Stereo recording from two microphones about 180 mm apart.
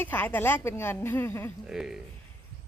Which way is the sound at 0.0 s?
10° left (ahead or behind).